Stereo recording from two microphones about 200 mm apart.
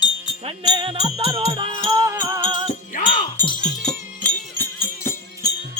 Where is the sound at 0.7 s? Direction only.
25° right (ahead or behind).